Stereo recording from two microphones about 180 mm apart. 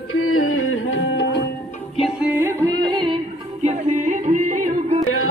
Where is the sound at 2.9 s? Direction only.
30° right (ahead or behind).